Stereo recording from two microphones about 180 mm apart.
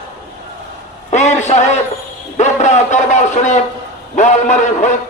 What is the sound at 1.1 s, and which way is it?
A man's voice, 40° left (ahead or behind).